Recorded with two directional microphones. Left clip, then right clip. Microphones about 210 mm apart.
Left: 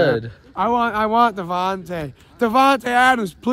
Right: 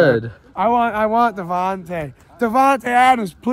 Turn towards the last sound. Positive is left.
turn(degrees=10)  # may be behind; listen again after turning